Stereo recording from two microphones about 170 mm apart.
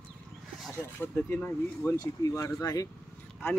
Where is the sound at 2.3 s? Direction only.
20° left (ahead or behind).